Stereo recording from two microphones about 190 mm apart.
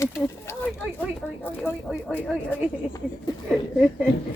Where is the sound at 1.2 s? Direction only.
Centre (ahead or behind).